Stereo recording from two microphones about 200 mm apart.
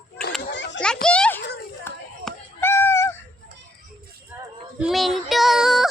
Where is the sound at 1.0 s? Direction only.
5° left (ahead or behind).